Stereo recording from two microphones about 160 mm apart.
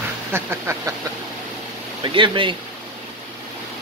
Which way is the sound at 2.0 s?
30° right (ahead or behind).